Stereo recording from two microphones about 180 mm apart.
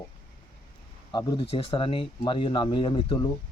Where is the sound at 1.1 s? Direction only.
25° left (ahead or behind).